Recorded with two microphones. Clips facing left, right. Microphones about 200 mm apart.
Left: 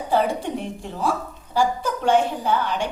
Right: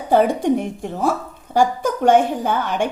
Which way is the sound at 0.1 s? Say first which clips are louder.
Right 7 dB; 55° right (ahead or behind).